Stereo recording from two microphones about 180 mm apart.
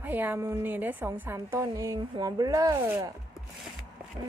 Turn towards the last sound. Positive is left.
turn(degrees=-15)  # may be behind; listen again after turning